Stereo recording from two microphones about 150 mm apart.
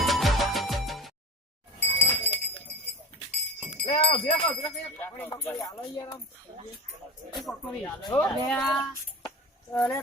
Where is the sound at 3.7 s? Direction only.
40° left (ahead or behind).